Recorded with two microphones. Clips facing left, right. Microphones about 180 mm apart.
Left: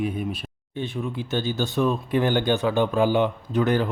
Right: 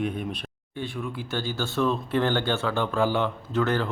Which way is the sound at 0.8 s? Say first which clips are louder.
Left 3 dB; 20° left (ahead or behind).